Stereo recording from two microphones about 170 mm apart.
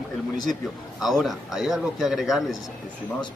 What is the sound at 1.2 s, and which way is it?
Speech, centre (ahead or behind).